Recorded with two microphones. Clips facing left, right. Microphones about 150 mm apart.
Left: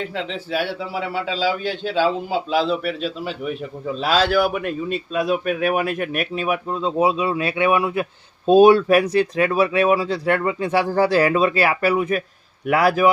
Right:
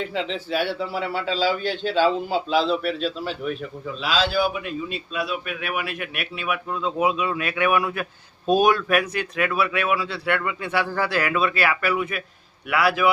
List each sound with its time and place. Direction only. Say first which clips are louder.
0.0 s a man's voice: even; centre (ahead or behind)
3.9 s a man's voice: left 5 dB; 55° left (ahead or behind)